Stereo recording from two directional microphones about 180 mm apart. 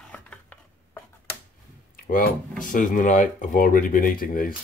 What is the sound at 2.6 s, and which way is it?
Speech, 45° left (ahead or behind).